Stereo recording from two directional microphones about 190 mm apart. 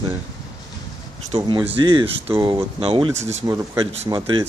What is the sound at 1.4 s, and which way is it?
Speech, 20° right (ahead or behind).